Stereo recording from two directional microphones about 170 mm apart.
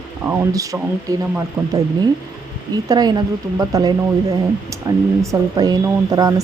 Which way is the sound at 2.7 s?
25° right (ahead or behind).